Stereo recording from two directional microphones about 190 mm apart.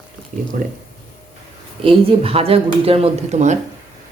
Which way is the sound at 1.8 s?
30° right (ahead or behind).